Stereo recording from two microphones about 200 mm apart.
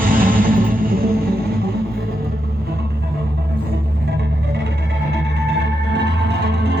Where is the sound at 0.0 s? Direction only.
45° right (ahead or behind).